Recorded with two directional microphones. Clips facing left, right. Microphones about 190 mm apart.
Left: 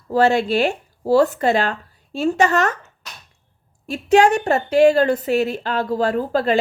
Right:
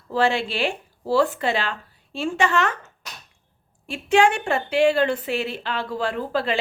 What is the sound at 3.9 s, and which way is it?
A woman's voice, 40° left (ahead or behind).